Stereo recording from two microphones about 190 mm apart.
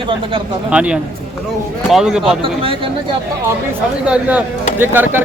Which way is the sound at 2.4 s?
30° right (ahead or behind).